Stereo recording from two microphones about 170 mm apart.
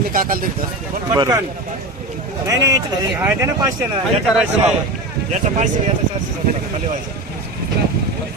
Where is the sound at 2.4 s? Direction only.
20° right (ahead or behind).